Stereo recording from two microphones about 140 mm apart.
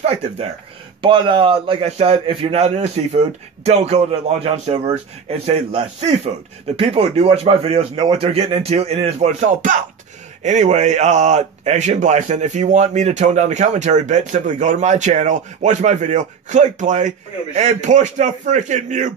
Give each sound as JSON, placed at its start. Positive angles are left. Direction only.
{"t": 1.0, "sound": "a man's voice", "side_deg": -35}
{"t": 2.6, "sound": "speech", "side_deg": -50}